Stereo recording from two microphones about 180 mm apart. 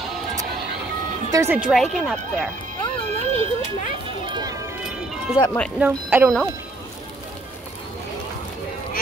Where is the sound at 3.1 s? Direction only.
35° right (ahead or behind).